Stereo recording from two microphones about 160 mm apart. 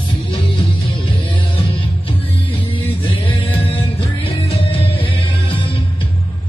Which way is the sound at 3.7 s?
35° left (ahead or behind).